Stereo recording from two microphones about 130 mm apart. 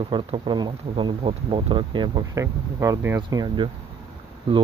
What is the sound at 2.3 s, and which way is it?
Speech, 25° right (ahead or behind).